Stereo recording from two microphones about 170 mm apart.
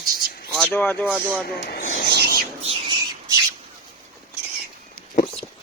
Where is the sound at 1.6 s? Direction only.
55° left (ahead or behind).